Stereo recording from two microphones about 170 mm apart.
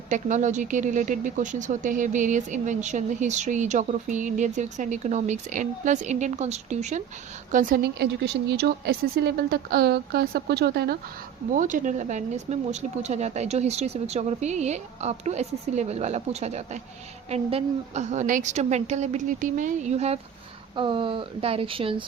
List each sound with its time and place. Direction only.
0.1 s speech: 45° right (ahead or behind)
7.9 s speech: 75° right (ahead or behind)
11.5 s a woman's voice: 50° right (ahead or behind); by 22.0 s 30° right (ahead or behind)